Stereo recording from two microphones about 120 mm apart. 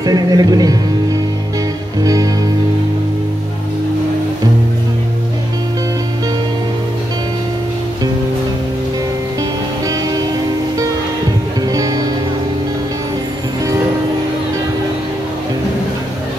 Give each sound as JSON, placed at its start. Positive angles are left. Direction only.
{"t": 0.0, "sound": "music", "side_deg": -35}
{"t": 2.0, "sound": "music", "side_deg": -30}
{"t": 11.6, "sound": "music", "side_deg": -30}